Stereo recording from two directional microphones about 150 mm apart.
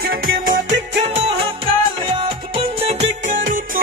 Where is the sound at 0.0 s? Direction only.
75° right (ahead or behind).